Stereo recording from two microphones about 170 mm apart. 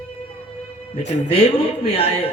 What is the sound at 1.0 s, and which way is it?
Speech, 35° left (ahead or behind).